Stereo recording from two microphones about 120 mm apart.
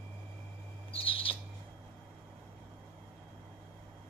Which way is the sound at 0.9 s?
50° left (ahead or behind).